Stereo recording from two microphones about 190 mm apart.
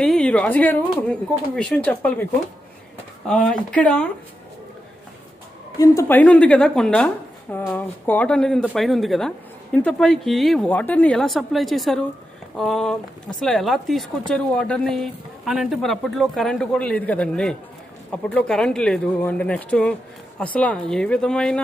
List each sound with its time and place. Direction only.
0.0 s a woman's voice: 5° left (ahead or behind)
3.3 s speech: 5° left (ahead or behind)
5.8 s a woman's voice: 15° left (ahead or behind)